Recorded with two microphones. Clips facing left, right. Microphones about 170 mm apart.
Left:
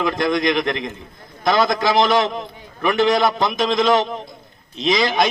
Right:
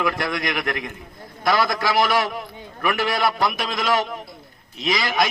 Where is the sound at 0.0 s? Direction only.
25° left (ahead or behind).